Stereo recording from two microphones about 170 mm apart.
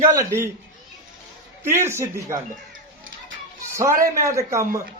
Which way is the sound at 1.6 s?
15° right (ahead or behind).